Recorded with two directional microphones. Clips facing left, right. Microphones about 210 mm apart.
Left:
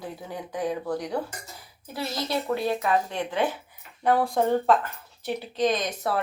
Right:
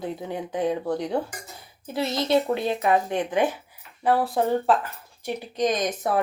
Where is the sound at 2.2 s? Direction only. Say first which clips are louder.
Right 4 dB; 20° right (ahead or behind).